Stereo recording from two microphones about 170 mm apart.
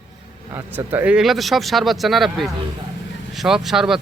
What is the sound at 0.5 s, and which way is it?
Speech, 15° right (ahead or behind).